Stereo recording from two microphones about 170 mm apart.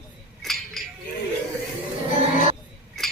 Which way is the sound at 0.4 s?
Centre (ahead or behind).